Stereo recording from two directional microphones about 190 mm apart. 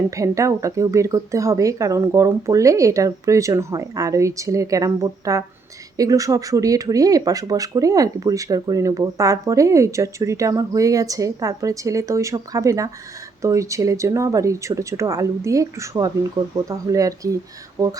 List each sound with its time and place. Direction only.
0.1 s speech: 15° right (ahead or behind)